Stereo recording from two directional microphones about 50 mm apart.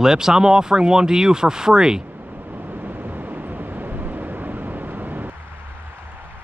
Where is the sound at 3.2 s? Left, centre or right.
Right.